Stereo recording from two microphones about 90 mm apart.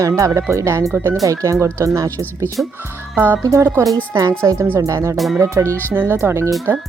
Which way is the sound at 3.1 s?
20° right (ahead or behind).